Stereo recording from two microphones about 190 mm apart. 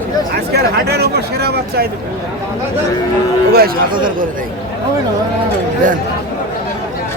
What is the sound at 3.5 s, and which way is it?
Speech, 50° right (ahead or behind).